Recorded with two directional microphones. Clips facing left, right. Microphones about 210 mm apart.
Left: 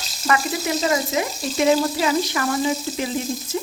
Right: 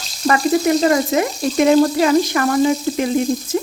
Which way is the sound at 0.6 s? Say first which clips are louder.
Right 7 dB; 55° right (ahead or behind).